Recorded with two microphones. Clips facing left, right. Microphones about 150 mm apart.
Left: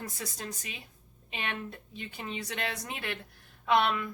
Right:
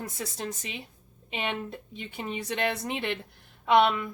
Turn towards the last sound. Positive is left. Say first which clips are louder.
# right 5 dB
turn(degrees=-20)  # may be behind; listen again after turning